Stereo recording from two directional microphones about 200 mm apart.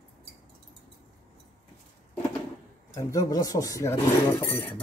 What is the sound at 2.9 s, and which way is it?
Speech, 15° left (ahead or behind).